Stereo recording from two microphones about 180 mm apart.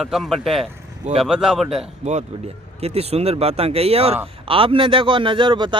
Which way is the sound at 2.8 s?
35° right (ahead or behind).